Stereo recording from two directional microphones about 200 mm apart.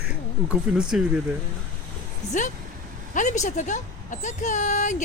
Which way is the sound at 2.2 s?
35° left (ahead or behind).